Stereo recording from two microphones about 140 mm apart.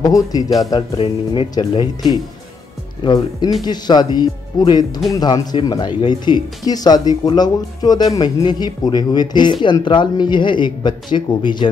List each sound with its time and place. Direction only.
0.0 s speech: 25° left (ahead or behind)
0.7 s speech: 40° left (ahead or behind)
1.5 s speech: 30° left (ahead or behind)